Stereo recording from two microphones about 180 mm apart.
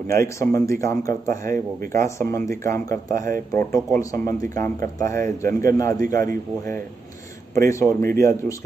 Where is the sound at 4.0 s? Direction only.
15° left (ahead or behind).